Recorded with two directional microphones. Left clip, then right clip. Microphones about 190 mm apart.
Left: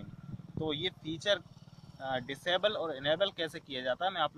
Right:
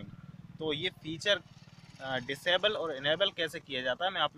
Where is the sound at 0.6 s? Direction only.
40° right (ahead or behind).